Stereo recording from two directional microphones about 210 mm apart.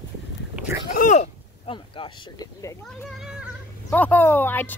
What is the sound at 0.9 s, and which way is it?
Speech, 35° left (ahead or behind).